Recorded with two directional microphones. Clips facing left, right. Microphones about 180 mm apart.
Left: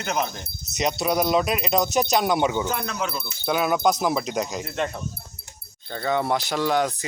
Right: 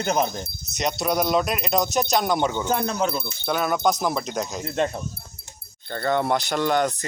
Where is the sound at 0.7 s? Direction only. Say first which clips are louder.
Left 1 dB; 5° left (ahead or behind).